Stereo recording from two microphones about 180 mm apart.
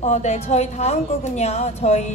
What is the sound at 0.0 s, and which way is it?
A woman's voice, 40° left (ahead or behind).